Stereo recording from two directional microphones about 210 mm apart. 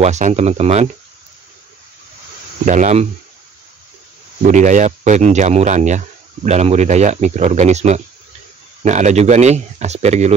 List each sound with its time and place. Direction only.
0.0 s speech: 30° right (ahead or behind)
2.6 s speech: 35° right (ahead or behind)
4.5 s speech: 35° right (ahead or behind)